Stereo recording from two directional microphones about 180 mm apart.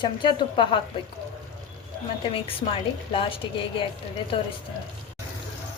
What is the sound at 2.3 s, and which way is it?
A woman's voice, 30° left (ahead or behind).